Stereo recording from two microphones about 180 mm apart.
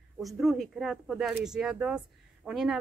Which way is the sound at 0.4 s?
Centre (ahead or behind).